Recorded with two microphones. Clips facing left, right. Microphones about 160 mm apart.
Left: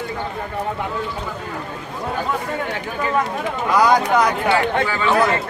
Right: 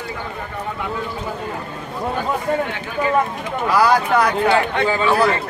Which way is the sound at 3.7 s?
20° left (ahead or behind).